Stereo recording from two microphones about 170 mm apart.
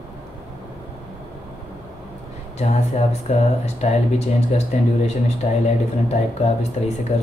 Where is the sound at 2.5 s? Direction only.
40° left (ahead or behind).